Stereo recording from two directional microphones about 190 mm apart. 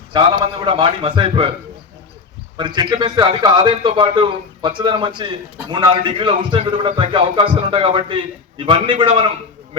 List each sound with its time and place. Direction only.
0.1 s a man's voice: 25° right (ahead or behind)
2.6 s a man's voice: 25° right (ahead or behind)